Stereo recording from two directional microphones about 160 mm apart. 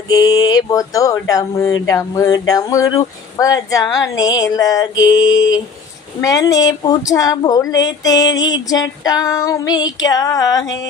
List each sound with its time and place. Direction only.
0.1 s female singing: 25° left (ahead or behind)